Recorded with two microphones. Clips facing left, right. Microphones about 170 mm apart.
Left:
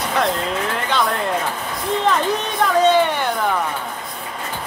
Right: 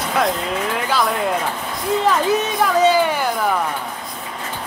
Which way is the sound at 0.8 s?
5° right (ahead or behind).